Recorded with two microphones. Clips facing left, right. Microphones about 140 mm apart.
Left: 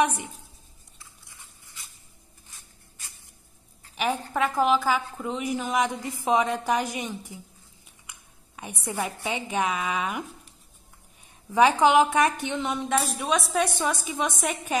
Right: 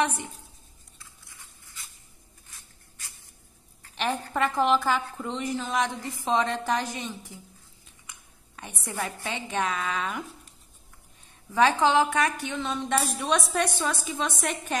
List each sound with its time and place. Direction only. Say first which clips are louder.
0.0 s a woman's voice: left 3 dB; 15° left (ahead or behind)
3.9 s a woman's voice: left 1 dB; 10° left (ahead or behind)
11.5 s a woman's voice: left 3 dB; 15° left (ahead or behind)
13.7 s a woman's voice: left 2 dB; 15° left (ahead or behind)